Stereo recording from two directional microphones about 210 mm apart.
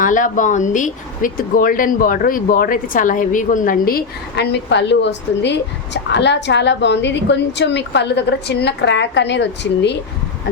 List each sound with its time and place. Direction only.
0.0 s a woman's voice: 40° left (ahead or behind); by 10.0 s 55° left (ahead or behind)